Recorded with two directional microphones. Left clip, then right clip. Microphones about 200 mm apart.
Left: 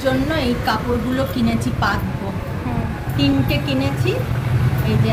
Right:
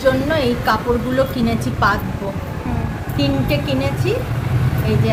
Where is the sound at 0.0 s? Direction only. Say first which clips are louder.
Right 3 dB; 45° right (ahead or behind).